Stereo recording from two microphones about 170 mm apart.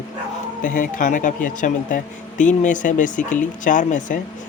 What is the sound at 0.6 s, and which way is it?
Speech, 50° left (ahead or behind).